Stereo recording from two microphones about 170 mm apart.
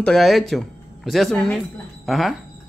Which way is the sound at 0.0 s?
Centre (ahead or behind).